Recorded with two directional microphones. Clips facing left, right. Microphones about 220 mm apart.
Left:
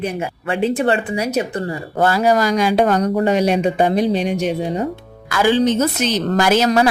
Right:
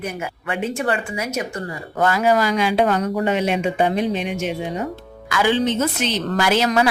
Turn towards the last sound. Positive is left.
turn(degrees=40)  # may be behind; listen again after turning